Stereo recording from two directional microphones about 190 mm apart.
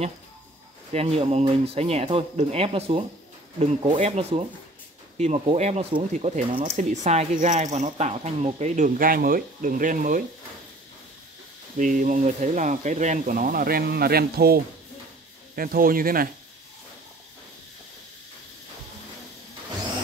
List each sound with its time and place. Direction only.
0.9 s speech: 30° right (ahead or behind)
11.8 s speech: 40° right (ahead or behind)